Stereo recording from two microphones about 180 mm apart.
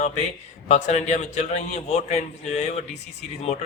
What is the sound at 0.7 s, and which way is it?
A man's voice, 40° left (ahead or behind).